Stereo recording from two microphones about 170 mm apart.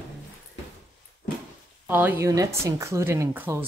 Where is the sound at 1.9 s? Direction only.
10° right (ahead or behind).